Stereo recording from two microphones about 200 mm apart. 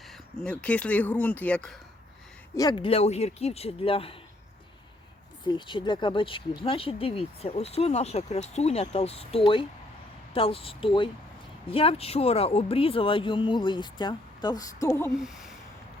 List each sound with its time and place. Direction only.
0.3 s speech: 5° left (ahead or behind)
2.6 s speech: 20° left (ahead or behind)
5.5 s speech: 25° left (ahead or behind)